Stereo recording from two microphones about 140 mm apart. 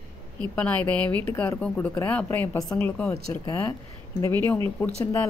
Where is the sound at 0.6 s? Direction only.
10° left (ahead or behind).